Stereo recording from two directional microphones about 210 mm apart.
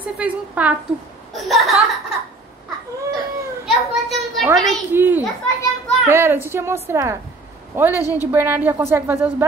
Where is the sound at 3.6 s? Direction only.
Centre (ahead or behind).